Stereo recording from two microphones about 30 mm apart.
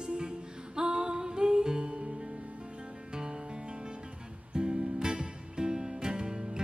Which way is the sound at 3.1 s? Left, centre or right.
Right.